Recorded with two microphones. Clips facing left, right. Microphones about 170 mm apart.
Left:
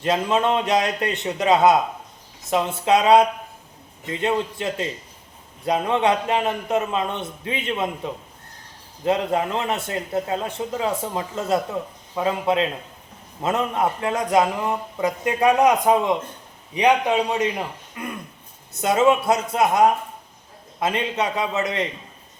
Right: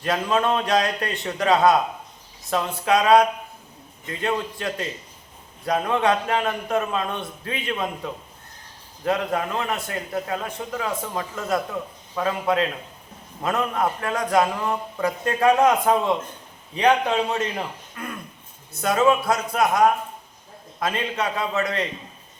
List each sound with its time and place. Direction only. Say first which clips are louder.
0.0 s a man's voice: left 2 dB; 20° left (ahead or behind)